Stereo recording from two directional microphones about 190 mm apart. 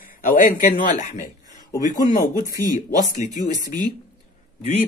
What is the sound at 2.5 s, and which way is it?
Speech, 20° right (ahead or behind).